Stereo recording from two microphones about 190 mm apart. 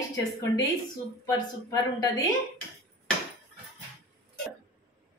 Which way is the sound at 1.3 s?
20° left (ahead or behind).